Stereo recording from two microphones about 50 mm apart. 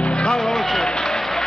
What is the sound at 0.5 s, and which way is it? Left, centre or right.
Music, centre.